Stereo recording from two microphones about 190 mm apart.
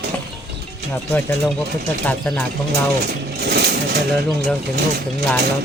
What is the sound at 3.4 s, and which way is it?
Vehicle, 60° right (ahead or behind).